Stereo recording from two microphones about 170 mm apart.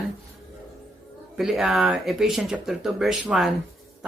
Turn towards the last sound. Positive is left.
turn(degrees=-5)  # may be behind; listen again after turning